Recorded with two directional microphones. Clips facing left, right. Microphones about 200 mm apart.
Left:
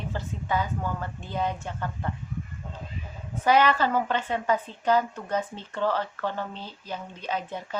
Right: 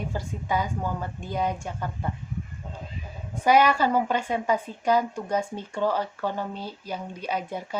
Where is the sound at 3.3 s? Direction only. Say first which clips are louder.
Right 1 dB; 10° right (ahead or behind).